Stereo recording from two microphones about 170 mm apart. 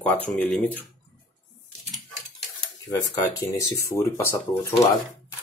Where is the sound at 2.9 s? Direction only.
20° left (ahead or behind).